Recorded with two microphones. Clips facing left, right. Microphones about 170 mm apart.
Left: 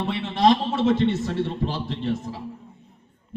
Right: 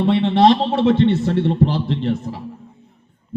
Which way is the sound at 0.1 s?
65° right (ahead or behind).